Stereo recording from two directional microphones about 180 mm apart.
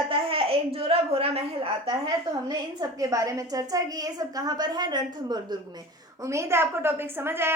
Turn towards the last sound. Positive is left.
turn(degrees=-15)  # may be behind; listen again after turning